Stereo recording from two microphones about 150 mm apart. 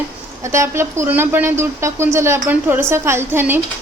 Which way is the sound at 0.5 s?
20° right (ahead or behind).